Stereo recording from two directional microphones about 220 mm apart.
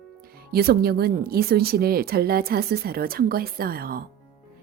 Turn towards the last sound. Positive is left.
turn(degrees=-40)  # may be behind; listen again after turning